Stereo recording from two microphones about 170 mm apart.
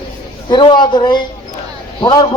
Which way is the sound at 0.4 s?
25° left (ahead or behind).